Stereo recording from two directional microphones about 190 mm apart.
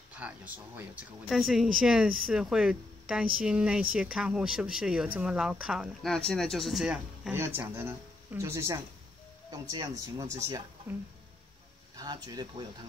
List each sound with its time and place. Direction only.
0.2 s speech: 5° right (ahead or behind)
12.0 s speech: 20° right (ahead or behind)